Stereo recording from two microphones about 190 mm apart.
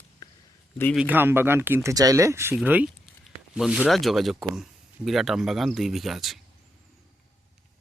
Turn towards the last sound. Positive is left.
turn(degrees=0)  # may be behind; listen again after turning